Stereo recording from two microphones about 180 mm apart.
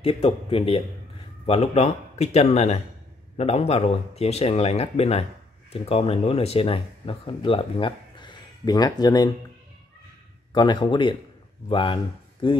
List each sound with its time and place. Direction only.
0.0 s speech: 35° left (ahead or behind)
10.5 s speech: 25° left (ahead or behind)